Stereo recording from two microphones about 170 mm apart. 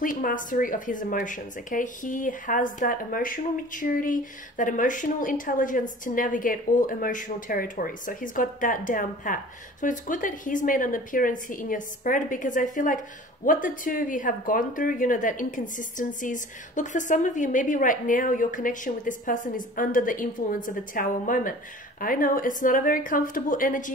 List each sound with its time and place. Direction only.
0.0 s speech: 55° left (ahead or behind)